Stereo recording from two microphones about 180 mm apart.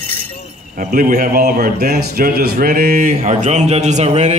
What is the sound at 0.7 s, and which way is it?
Speech, 50° right (ahead or behind).